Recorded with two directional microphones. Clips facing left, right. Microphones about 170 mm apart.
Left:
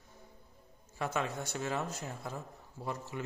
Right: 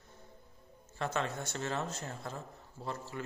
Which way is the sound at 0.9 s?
10° left (ahead or behind).